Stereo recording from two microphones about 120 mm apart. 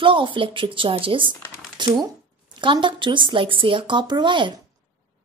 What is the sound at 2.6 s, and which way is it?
A woman's voice, 40° right (ahead or behind).